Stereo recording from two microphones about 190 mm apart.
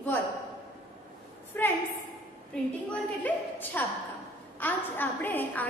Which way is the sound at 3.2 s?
10° left (ahead or behind).